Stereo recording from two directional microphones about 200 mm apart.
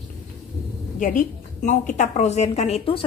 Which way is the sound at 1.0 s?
40° left (ahead or behind).